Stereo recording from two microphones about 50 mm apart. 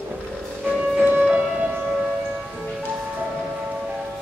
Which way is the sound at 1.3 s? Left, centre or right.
Right.